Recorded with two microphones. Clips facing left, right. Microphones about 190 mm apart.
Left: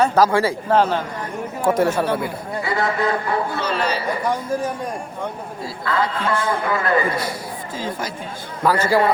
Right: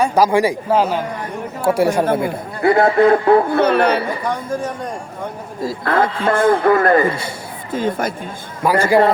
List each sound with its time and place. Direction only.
0.0 s speech: 15° right (ahead or behind)
2.2 s a man's voice: 55° right (ahead or behind)
5.6 s a man's voice: 50° right (ahead or behind)
8.6 s speech: 15° right (ahead or behind)